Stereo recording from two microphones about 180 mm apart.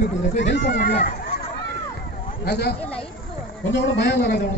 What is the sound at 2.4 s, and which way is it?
Speech, 65° left (ahead or behind).